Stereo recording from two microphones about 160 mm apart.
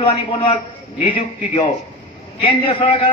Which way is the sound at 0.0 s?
35° left (ahead or behind).